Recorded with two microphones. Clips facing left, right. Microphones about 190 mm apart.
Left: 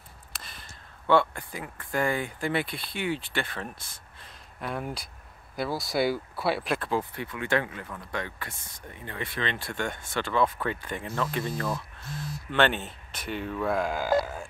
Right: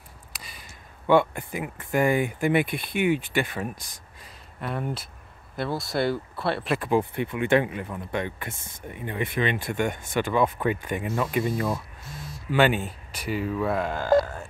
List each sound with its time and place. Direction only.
0.5 s speech: 10° right (ahead or behind)
4.6 s speech: centre (ahead or behind)
6.8 s speech: 15° right (ahead or behind); by 14.5 s 5° left (ahead or behind)